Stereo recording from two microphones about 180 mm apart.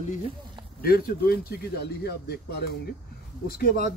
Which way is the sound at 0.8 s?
55° left (ahead or behind).